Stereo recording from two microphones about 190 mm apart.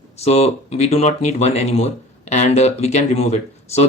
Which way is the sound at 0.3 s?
35° left (ahead or behind).